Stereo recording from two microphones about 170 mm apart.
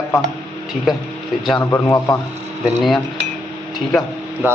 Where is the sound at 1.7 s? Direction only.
15° left (ahead or behind).